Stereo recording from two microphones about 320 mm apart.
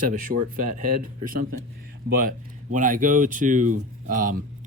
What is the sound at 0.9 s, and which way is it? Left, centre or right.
Speech, right.